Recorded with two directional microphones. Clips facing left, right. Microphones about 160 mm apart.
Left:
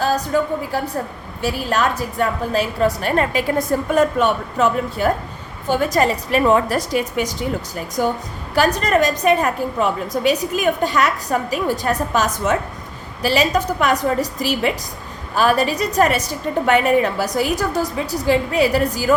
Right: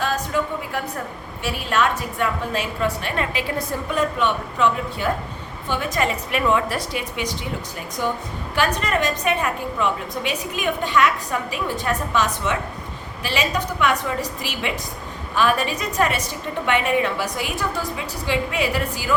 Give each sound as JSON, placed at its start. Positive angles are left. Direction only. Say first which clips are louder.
{"t": 0.0, "sound": "a woman's voice", "louder": "left 5 dB", "side_deg": 35}
{"t": 8.5, "sound": "a woman's voice", "louder": "left 6 dB", "side_deg": 40}